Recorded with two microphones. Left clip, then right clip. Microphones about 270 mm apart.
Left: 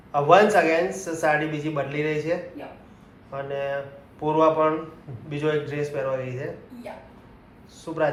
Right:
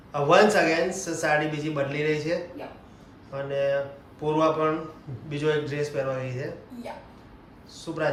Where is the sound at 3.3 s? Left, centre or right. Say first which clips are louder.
Right 2 dB; centre.